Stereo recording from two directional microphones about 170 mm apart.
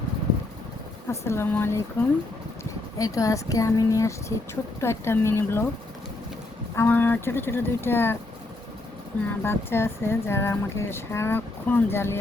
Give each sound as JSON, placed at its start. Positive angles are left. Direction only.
{"t": 1.2, "sound": "speech", "side_deg": 15}
{"t": 6.7, "sound": "speech", "side_deg": 10}
{"t": 9.2, "sound": "speech", "side_deg": 15}